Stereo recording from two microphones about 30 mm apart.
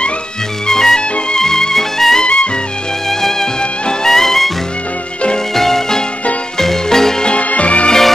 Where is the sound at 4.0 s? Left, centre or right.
Centre.